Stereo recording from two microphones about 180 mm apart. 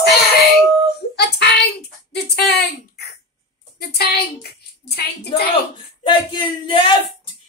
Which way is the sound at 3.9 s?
60° left (ahead or behind).